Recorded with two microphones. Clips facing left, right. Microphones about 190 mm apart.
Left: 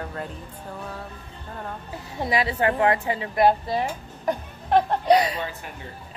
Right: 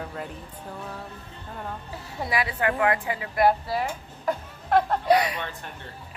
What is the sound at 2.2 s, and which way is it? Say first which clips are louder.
A woman's voice: left 3 dB; 25° left (ahead or behind).